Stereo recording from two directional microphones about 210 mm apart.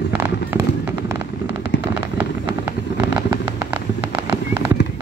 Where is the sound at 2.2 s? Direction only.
10° right (ahead or behind).